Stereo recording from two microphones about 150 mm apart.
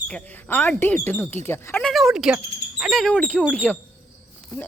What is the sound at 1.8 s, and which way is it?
Speech, centre (ahead or behind).